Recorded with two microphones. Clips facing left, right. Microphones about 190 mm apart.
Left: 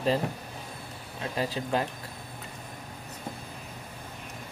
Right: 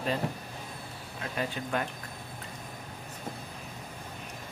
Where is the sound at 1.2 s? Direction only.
30° left (ahead or behind).